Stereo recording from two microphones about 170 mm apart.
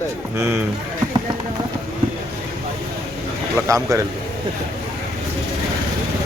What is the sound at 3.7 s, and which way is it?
Speech, 20° right (ahead or behind).